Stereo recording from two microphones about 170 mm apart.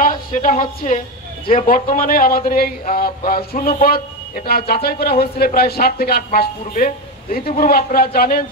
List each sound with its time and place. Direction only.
0.0 s a woman's voice: 50° left (ahead or behind)